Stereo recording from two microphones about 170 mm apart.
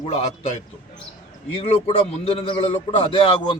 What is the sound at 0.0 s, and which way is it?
Speech, 35° left (ahead or behind).